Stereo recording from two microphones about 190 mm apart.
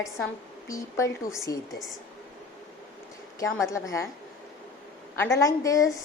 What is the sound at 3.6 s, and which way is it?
Speech, 15° left (ahead or behind).